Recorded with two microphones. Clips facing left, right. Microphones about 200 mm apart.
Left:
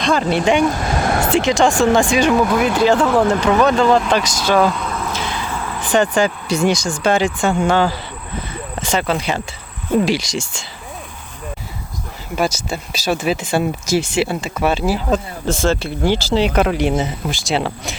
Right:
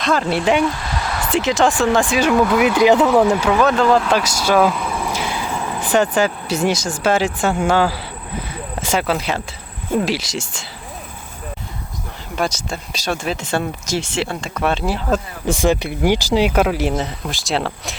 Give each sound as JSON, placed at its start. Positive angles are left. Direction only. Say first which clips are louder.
{"t": 0.0, "sound": "speech", "louder": "left 2 dB", "side_deg": 0}
{"t": 0.6, "sound": "a sound", "louder": "left 4 dB", "side_deg": 45}
{"t": 1.4, "sound": "speech", "louder": "even", "side_deg": -5}
{"t": 2.7, "sound": "speech", "louder": "right 2 dB", "side_deg": -15}
{"t": 5.8, "sound": "speech", "louder": "left 1 dB", "side_deg": -5}
{"t": 12.4, "sound": "speech", "louder": "left 2 dB", "side_deg": 5}
{"t": 15.4, "sound": "speech", "louder": "right 1 dB", "side_deg": -15}